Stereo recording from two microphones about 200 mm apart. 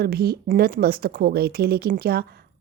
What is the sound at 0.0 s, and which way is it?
Speech, 50° right (ahead or behind).